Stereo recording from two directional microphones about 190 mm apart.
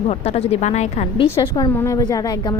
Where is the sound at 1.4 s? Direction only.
20° left (ahead or behind).